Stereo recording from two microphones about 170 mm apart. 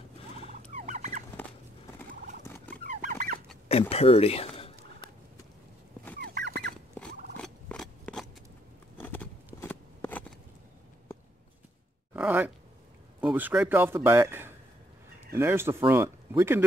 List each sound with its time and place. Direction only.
0.5 s fowl: 40° right (ahead or behind)
2.4 s turkey: 15° left (ahead or behind)
2.9 s fowl: 50° right (ahead or behind)
3.9 s speech: 35° left (ahead or behind)
6.1 s fowl: 70° right (ahead or behind)
7.3 s a sound: 5° left (ahead or behind)
9.6 s scissors: 10° left (ahead or behind)
12.1 s a sound: 10° right (ahead or behind)
13.2 s speech: 10° right (ahead or behind)